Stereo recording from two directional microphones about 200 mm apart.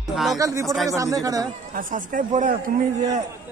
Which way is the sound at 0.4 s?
15° right (ahead or behind).